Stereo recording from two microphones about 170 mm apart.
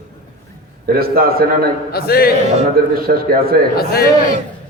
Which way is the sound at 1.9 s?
65° left (ahead or behind).